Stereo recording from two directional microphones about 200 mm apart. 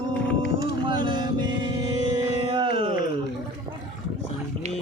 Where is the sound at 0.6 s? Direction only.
25° right (ahead or behind).